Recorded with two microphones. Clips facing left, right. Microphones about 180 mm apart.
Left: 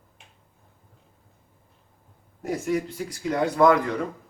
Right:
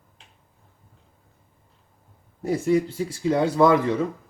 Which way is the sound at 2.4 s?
30° right (ahead or behind).